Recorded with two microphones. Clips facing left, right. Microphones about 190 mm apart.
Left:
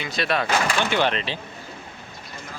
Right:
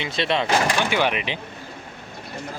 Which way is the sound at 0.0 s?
25° right (ahead or behind).